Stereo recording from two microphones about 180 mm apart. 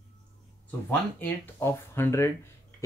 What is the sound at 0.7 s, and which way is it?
Speech, 10° left (ahead or behind).